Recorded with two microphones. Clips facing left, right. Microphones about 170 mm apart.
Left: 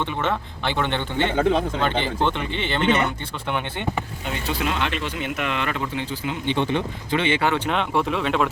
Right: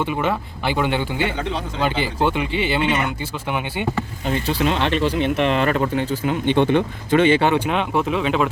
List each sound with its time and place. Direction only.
0.0 s speech: 10° right (ahead or behind)
1.4 s speech: 45° left (ahead or behind)
2.0 s speech: 10° right (ahead or behind)
4.5 s speech: 35° right (ahead or behind)
7.4 s speech: 15° right (ahead or behind)
7.7 s speech: 5° right (ahead or behind)